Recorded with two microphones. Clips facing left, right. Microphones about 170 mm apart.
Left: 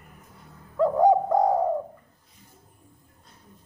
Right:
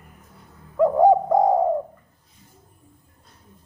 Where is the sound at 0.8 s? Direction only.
15° right (ahead or behind).